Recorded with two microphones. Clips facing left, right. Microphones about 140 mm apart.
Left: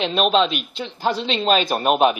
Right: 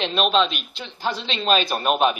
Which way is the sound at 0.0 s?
35° left (ahead or behind).